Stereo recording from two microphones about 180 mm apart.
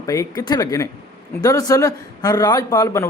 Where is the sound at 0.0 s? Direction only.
20° left (ahead or behind).